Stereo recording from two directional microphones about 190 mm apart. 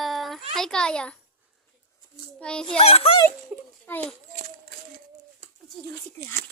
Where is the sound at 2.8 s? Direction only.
30° left (ahead or behind).